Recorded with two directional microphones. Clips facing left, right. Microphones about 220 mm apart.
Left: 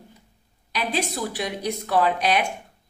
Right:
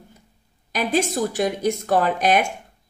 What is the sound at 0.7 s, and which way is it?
A woman's voice, 45° right (ahead or behind).